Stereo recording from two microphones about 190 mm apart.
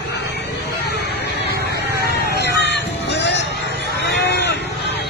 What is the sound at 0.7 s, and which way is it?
Music, 60° left (ahead or behind).